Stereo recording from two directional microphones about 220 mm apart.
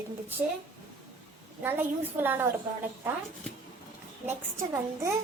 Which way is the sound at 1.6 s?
10° right (ahead or behind).